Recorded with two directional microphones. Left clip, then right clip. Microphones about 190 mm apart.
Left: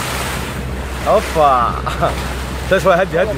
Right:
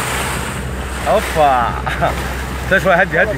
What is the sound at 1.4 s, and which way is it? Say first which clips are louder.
Speech: even; 10° left (ahead or behind).